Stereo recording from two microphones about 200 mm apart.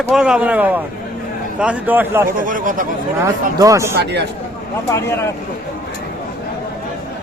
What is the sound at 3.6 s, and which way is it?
Speech, 15° right (ahead or behind).